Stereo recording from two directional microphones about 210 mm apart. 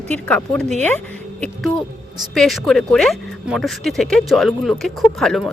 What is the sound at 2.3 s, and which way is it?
Speech, centre (ahead or behind).